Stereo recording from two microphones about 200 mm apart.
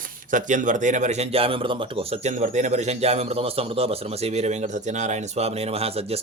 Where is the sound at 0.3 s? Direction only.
40° right (ahead or behind).